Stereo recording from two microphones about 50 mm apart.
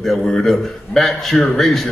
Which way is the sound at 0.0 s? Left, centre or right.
Centre.